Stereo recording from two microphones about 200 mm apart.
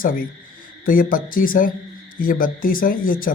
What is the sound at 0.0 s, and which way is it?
Speech, 45° left (ahead or behind).